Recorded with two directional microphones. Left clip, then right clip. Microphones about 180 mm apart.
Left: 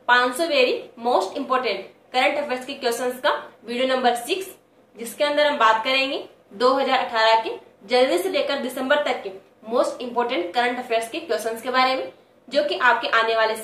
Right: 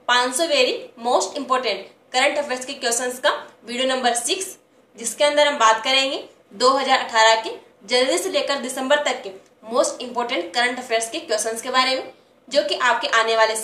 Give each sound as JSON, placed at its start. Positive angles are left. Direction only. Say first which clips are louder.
{"t": 0.0, "sound": "a woman's voice", "louder": "left 1 dB", "side_deg": -15}